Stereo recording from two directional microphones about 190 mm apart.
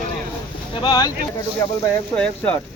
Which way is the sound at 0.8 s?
20° left (ahead or behind).